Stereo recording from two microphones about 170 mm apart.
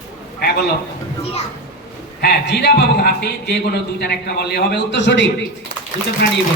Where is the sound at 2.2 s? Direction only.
80° left.